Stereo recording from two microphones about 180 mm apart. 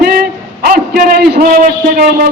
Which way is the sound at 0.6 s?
50° right (ahead or behind).